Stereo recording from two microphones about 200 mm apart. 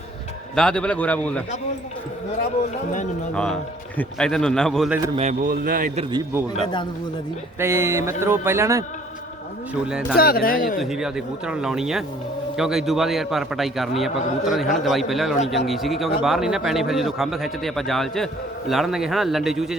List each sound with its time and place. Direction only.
0.5 s a man's voice: 5° left (ahead or behind)
3.3 s speech: 5° left (ahead or behind)
5.1 s speech: 35° right (ahead or behind)
6.0 s a man's voice: 25° right (ahead or behind)
7.6 s speech: 15° right (ahead or behind)
10.2 s speech: 50° left (ahead or behind)
10.8 s speech: centre (ahead or behind)